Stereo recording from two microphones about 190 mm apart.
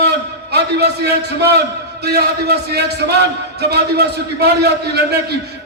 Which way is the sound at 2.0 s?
55° right (ahead or behind).